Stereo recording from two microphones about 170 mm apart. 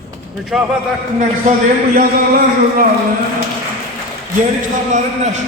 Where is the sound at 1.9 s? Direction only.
60° right (ahead or behind).